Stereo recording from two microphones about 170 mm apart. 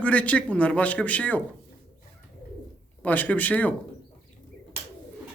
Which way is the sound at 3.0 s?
10° left (ahead or behind).